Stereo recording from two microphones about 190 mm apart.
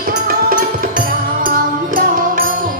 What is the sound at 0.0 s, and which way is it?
Music, 45° right (ahead or behind).